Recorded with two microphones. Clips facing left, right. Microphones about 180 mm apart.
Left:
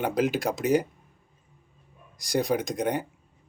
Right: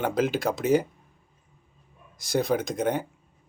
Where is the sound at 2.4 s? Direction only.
15° left (ahead or behind).